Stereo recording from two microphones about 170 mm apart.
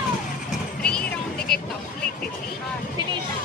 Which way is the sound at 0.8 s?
5° left (ahead or behind).